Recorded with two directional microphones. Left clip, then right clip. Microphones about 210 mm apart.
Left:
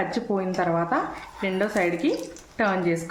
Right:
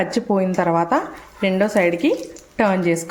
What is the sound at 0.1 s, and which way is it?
Speech, 40° right (ahead or behind).